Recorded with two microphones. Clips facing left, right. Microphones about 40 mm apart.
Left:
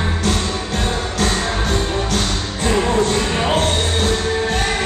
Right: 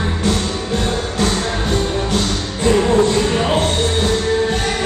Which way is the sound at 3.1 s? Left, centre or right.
Centre.